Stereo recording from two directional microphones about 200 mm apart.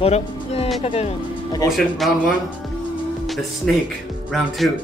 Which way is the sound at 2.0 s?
Centre (ahead or behind).